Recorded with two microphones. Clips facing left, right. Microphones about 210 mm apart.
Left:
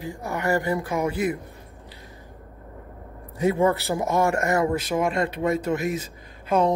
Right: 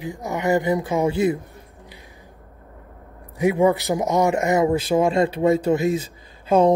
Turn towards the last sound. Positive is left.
turn(degrees=-30)  # may be behind; listen again after turning